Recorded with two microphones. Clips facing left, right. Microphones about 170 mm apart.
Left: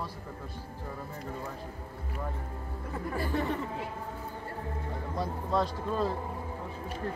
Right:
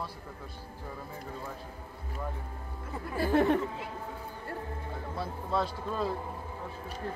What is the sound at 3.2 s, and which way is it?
Speech, 70° right (ahead or behind).